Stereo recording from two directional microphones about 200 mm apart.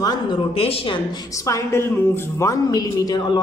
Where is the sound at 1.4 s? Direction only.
15° left (ahead or behind).